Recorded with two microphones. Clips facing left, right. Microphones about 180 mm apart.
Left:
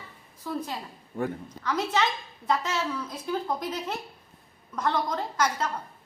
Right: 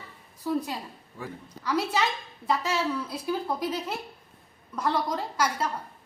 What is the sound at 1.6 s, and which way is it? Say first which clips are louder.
Speech: even; 10° right (ahead or behind).